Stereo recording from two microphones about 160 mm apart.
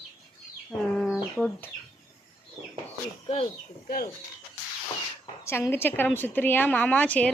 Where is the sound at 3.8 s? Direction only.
70° left (ahead or behind).